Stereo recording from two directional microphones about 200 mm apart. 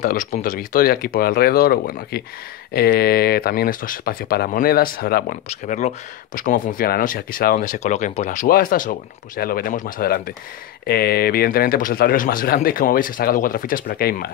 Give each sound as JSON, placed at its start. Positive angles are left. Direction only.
{"t": 0.0, "sound": "speech", "side_deg": 40}
{"t": 5.5, "sound": "speech", "side_deg": 35}